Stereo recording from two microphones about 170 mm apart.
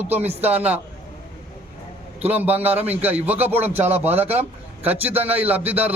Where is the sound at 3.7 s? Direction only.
40° right (ahead or behind).